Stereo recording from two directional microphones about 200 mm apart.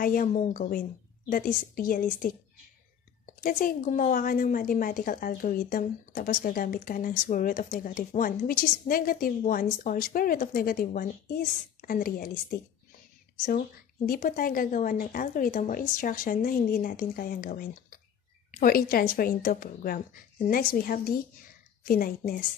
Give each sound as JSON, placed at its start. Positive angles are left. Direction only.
{"t": 0.0, "sound": "a woman's voice", "side_deg": 45}
{"t": 3.3, "sound": "a woman's voice", "side_deg": 45}